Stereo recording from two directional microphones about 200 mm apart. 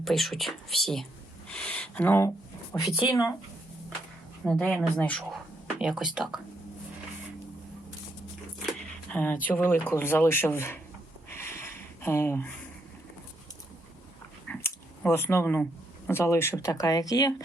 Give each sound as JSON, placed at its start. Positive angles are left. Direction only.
{"t": 0.0, "sound": "speech", "side_deg": 0}
{"t": 2.8, "sound": "speech", "side_deg": 0}
{"t": 3.1, "sound": "speech", "side_deg": 15}
{"t": 4.4, "sound": "speech", "side_deg": 5}
{"t": 8.6, "sound": "speech", "side_deg": 5}
{"t": 11.3, "sound": "a sound", "side_deg": 10}
{"t": 14.4, "sound": "a sound", "side_deg": 10}
{"t": 16.0, "sound": "speech", "side_deg": 10}